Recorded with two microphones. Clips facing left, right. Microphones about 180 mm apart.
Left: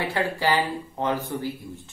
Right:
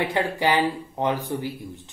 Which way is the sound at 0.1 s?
20° right (ahead or behind).